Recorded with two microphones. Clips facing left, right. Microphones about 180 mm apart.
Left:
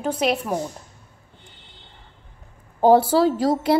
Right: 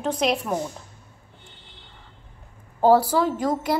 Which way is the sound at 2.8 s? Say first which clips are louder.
Left 3 dB; 20° left (ahead or behind).